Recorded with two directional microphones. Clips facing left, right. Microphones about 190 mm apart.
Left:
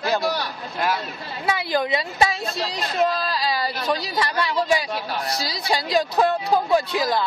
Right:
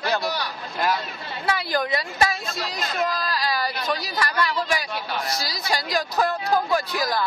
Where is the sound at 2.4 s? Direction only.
30° left (ahead or behind).